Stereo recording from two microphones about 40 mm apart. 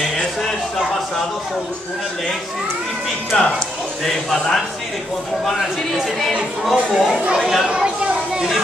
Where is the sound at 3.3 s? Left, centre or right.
Centre.